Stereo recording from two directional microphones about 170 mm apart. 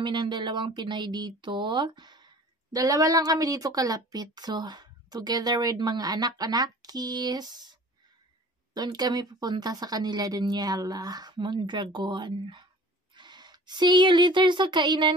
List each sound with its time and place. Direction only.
0.0 s speech: 30° right (ahead or behind)
8.7 s speech: 25° right (ahead or behind)